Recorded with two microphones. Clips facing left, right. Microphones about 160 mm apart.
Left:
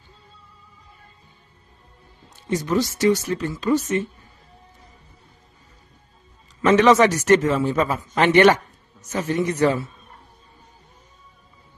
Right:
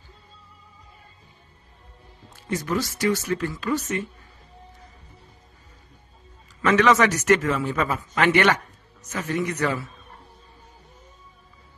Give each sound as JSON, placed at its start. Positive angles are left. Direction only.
{"t": 2.2, "sound": "a man's voice", "side_deg": 20}
{"t": 6.6, "sound": "a man's voice", "side_deg": 25}